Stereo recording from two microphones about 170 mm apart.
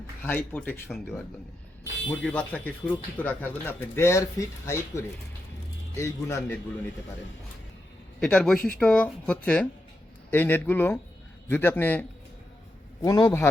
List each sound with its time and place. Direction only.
0.2 s speech: 10° left (ahead or behind)
2.2 s speech: 10° left (ahead or behind)
8.2 s speech: 5° left (ahead or behind)
13.0 s a man's voice: 20° left (ahead or behind)